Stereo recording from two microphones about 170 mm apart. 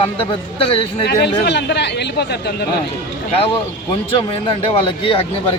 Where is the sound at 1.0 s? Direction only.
85° left.